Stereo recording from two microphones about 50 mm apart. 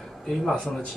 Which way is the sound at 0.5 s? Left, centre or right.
Centre.